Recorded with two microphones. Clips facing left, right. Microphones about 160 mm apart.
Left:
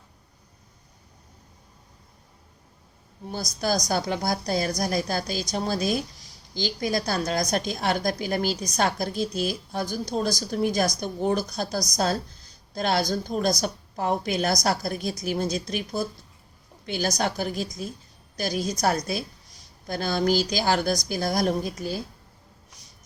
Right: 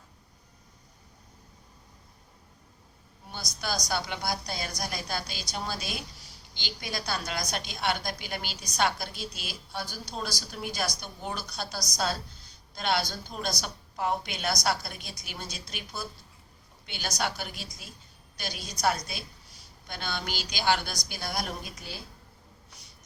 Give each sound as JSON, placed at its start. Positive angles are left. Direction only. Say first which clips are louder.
{"t": 3.3, "sound": "a woman's voice", "louder": "left 8 dB", "side_deg": 45}